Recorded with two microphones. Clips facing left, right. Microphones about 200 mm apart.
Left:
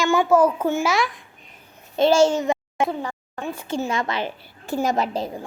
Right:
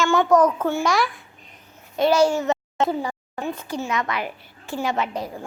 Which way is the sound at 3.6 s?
30° left (ahead or behind).